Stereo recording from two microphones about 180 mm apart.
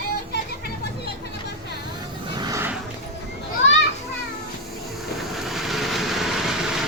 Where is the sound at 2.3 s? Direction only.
20° right (ahead or behind).